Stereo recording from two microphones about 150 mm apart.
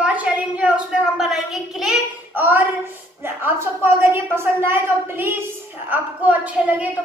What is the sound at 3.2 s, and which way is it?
A woman's voice, 15° right (ahead or behind).